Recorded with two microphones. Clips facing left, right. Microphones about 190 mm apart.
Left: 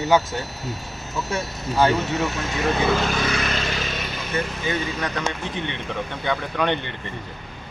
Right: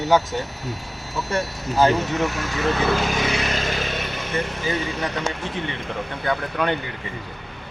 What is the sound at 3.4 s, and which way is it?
Vehicle, 45° right (ahead or behind).